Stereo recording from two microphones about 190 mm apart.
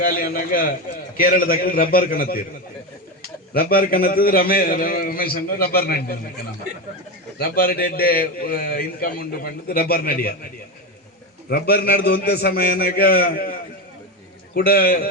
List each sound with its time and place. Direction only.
0.0 s a man's voice: 50° left (ahead or behind)
3.5 s a man's voice: 50° left (ahead or behind)
7.3 s a man's voice: 55° left (ahead or behind)
11.4 s a man's voice: 55° left (ahead or behind)